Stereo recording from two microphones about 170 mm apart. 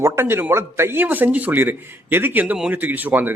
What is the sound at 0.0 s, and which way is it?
A man's voice, 15° right (ahead or behind).